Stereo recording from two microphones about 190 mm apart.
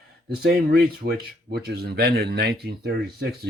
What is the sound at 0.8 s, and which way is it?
Speech, 55° right (ahead or behind).